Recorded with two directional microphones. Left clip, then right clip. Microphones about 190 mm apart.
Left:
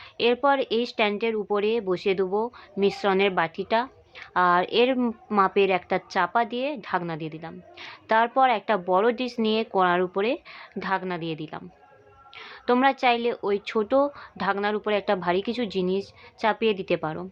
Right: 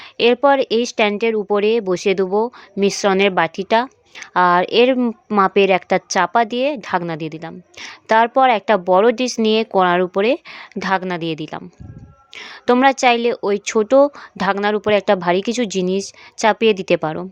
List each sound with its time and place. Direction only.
0.2 s speech: 50° right (ahead or behind)